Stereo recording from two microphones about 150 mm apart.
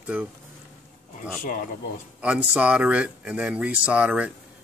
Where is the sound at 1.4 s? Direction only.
65° left (ahead or behind).